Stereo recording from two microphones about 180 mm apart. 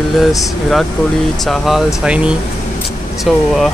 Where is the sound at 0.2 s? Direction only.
Centre (ahead or behind).